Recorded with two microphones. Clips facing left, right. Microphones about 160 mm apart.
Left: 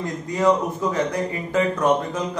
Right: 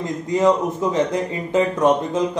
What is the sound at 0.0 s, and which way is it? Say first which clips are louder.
A man's voice: right 3 dB; 20° right (ahead or behind).